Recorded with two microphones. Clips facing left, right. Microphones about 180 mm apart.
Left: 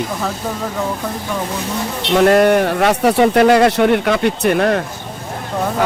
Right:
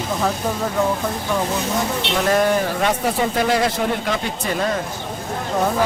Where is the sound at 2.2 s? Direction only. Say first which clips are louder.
Left 6 dB; 65° left (ahead or behind).